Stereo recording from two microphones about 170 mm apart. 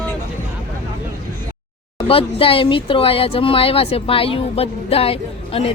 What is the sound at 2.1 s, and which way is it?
Speech, 35° left (ahead or behind).